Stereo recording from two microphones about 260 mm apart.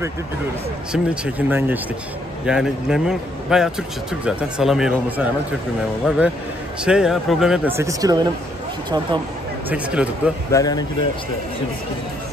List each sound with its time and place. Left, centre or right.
0.9 s a man's voice: centre
9.7 s a man's voice: centre
10.5 s speech: centre